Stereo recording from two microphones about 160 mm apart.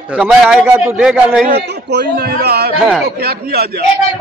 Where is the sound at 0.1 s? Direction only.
5° right (ahead or behind).